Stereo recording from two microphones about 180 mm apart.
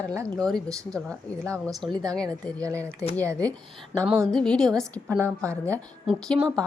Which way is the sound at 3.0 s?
5° left (ahead or behind).